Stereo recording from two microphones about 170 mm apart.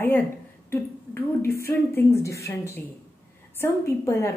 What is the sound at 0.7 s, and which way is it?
A woman's voice, 15° left (ahead or behind).